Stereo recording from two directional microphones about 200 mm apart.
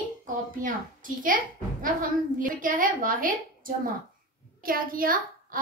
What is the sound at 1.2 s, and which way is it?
A woman's voice, 45° right (ahead or behind).